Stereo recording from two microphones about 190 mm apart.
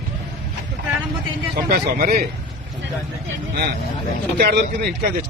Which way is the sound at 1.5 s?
50° right (ahead or behind).